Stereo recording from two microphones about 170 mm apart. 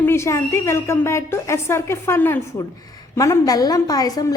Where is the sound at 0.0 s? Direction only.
15° left (ahead or behind).